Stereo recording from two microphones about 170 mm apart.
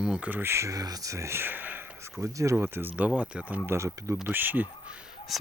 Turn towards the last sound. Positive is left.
turn(degrees=0)  # may be behind; listen again after turning